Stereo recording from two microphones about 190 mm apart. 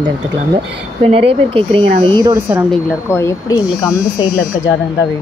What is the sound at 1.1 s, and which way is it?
Speech, 30° right (ahead or behind).